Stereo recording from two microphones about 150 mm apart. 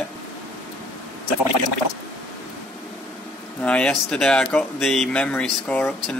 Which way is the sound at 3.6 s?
5° left (ahead or behind).